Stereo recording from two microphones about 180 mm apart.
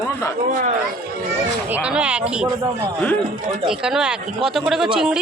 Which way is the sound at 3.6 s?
5° right (ahead or behind).